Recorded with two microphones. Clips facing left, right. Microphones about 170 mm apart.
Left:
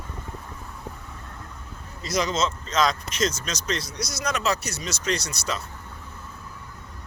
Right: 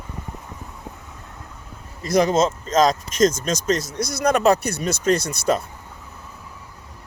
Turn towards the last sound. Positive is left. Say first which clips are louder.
# right 9 dB
turn(degrees=-50)  # may be behind; listen again after turning